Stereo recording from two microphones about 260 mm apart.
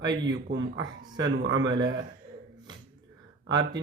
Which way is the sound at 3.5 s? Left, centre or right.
Right.